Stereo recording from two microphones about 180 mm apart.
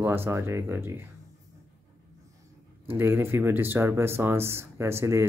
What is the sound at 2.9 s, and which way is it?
Speech, 10° right (ahead or behind).